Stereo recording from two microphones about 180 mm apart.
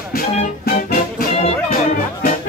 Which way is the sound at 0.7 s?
55° left (ahead or behind).